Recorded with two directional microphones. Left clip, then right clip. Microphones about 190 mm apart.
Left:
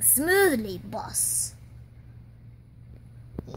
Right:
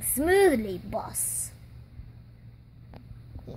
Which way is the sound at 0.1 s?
Centre (ahead or behind).